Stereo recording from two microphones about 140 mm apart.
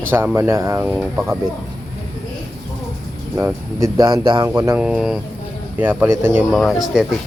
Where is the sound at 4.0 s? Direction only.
30° right (ahead or behind).